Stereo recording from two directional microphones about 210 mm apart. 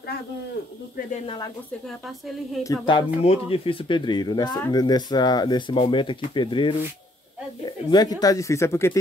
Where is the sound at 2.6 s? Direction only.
20° left (ahead or behind).